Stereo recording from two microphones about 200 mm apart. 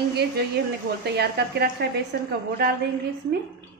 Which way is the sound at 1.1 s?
55° right (ahead or behind).